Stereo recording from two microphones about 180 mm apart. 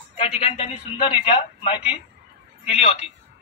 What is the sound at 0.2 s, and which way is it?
A man's voice, 30° left (ahead or behind).